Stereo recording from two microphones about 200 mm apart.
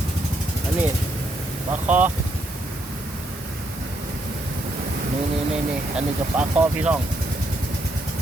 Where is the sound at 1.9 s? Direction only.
5° right (ahead or behind).